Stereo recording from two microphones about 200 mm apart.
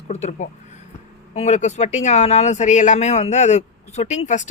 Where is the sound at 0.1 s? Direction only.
35° left (ahead or behind).